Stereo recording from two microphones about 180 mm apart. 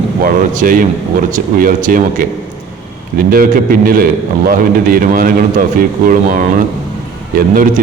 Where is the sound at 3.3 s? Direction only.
55° right (ahead or behind).